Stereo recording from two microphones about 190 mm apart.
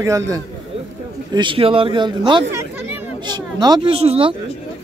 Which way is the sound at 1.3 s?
25° right (ahead or behind).